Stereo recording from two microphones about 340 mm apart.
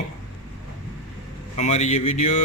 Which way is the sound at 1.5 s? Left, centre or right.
Centre.